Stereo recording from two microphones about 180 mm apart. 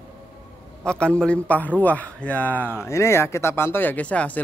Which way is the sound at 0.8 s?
5° left (ahead or behind).